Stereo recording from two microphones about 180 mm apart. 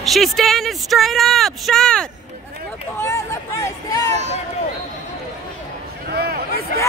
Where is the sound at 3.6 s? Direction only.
20° left (ahead or behind).